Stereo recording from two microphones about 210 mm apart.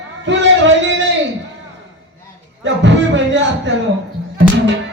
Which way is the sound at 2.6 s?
60° right (ahead or behind).